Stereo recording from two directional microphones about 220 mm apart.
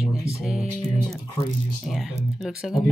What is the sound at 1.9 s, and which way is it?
Speech, centre (ahead or behind).